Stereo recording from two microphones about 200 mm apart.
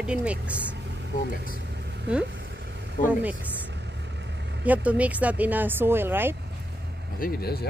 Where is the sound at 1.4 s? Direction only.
55° right (ahead or behind).